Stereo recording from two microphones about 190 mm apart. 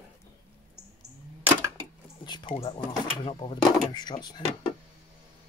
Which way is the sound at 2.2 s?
25° left (ahead or behind).